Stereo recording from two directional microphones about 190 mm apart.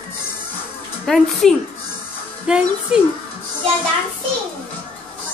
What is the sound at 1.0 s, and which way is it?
A woman's voice, centre (ahead or behind).